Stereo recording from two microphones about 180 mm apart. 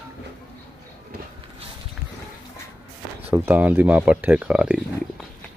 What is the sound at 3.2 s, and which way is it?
Speech, 10° right (ahead or behind).